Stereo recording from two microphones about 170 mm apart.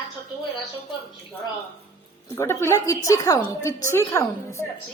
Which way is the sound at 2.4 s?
15° left (ahead or behind).